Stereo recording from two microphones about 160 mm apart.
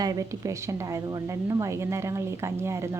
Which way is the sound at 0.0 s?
25° right (ahead or behind).